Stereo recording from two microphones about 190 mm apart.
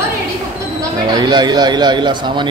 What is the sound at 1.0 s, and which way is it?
Speech, 25° right (ahead or behind).